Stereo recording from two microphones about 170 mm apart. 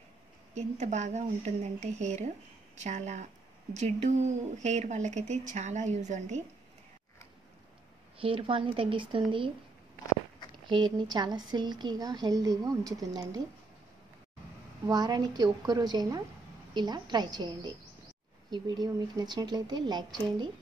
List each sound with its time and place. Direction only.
0.6 s speech: 45° right (ahead or behind)
8.2 s speech: 30° right (ahead or behind)
10.7 s speech: 25° right (ahead or behind)
14.9 s speech: 25° right (ahead or behind)